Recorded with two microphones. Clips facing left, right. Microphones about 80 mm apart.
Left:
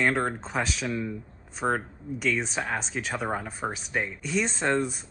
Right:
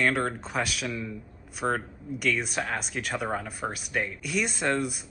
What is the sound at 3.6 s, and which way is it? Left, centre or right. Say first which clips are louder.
Speech: left 1 dB; centre.